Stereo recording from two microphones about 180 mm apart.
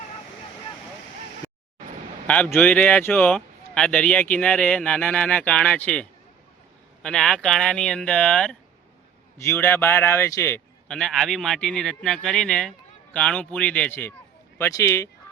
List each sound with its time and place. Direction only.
2.2 s a man's voice: 5° left (ahead or behind)